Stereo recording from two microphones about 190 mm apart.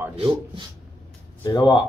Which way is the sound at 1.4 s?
25° left (ahead or behind).